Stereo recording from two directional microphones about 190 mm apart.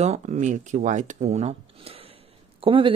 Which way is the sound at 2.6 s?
25° right (ahead or behind).